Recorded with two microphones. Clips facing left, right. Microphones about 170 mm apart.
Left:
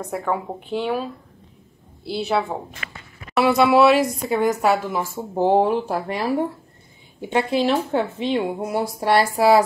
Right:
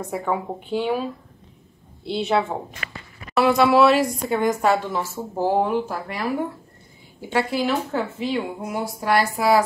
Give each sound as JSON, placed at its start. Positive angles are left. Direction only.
{"t": 0.1, "sound": "a woman's voice", "side_deg": 0}
{"t": 2.0, "sound": "a woman's voice", "side_deg": 5}
{"t": 5.6, "sound": "a woman's voice", "side_deg": 30}